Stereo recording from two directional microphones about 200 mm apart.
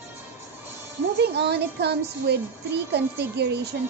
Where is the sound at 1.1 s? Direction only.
55° right (ahead or behind).